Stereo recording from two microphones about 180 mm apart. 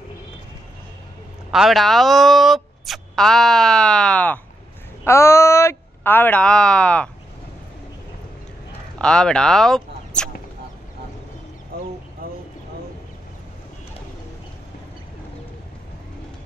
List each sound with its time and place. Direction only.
1.5 s speech: centre (ahead or behind)
8.9 s speech: 5° left (ahead or behind)
12.2 s a sound: 55° right (ahead or behind)